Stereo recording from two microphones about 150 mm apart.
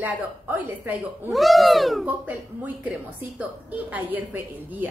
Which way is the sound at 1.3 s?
Centre (ahead or behind).